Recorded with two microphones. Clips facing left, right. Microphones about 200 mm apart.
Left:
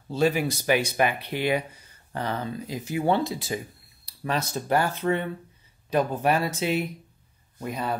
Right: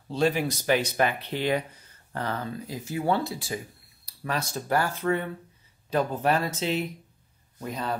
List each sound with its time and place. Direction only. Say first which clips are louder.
0.1 s speech: left 1 dB; 5° left (ahead or behind)